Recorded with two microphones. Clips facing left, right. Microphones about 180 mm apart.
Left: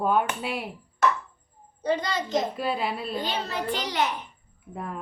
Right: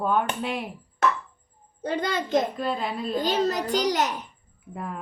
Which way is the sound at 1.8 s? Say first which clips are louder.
Even; 55° right (ahead or behind).